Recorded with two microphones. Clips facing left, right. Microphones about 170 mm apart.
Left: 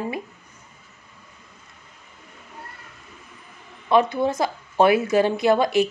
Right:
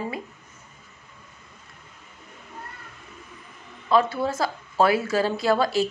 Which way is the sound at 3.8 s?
20° left (ahead or behind).